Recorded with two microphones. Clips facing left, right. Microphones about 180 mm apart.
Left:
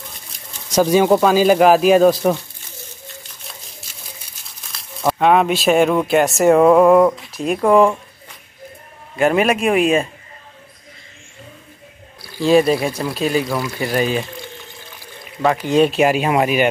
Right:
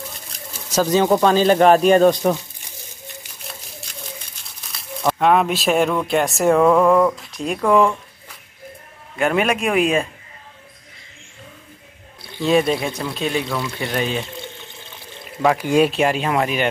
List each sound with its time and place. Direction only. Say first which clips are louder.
0.7 s speech: left 3 dB; 10° left (ahead or behind)
3.9 s a sound: right 5 dB; 5° left (ahead or behind)
6.0 s speech: left 4 dB; 5° left (ahead or behind)
7.2 s speech: left 4 dB; 5° left (ahead or behind)
9.2 s speech: left 3 dB; centre (ahead or behind)
12.4 s speech: left 4 dB; centre (ahead or behind)
14.3 s pour: left 1 dB; 25° right (ahead or behind)
15.4 s speech: left 1 dB; 10° right (ahead or behind)
15.9 s speech: left 3 dB; 5° left (ahead or behind)